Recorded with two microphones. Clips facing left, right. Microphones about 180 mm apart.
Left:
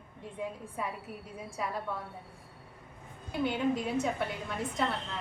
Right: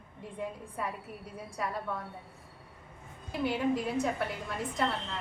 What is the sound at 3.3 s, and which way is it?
A woman's voice, centre (ahead or behind).